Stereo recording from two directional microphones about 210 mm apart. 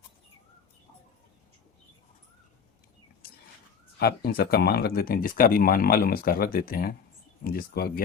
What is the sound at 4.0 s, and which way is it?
Speech, 45° left (ahead or behind).